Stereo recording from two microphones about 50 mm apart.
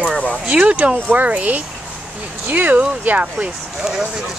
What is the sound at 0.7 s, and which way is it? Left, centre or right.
Speech, right.